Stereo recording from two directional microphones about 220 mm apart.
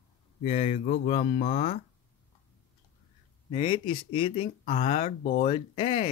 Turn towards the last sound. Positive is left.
turn(degrees=25)  # may be behind; listen again after turning